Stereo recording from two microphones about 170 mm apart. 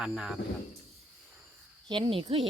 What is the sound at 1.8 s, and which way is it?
Speech, 30° right (ahead or behind).